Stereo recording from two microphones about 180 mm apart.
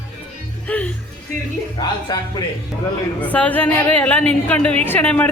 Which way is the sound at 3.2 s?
10° left (ahead or behind).